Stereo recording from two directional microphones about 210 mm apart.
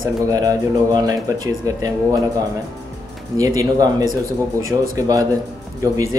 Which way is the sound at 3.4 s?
15° right (ahead or behind).